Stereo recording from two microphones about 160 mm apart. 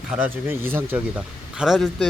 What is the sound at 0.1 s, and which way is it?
Speech, 5° right (ahead or behind).